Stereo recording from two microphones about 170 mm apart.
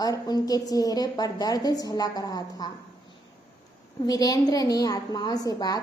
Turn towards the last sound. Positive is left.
turn(degrees=20)  # may be behind; listen again after turning